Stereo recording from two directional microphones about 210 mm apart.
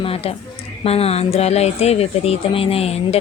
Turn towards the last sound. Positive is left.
turn(degrees=30)  # may be behind; listen again after turning